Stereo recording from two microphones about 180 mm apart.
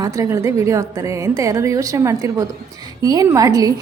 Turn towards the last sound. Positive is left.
turn(degrees=-20)  # may be behind; listen again after turning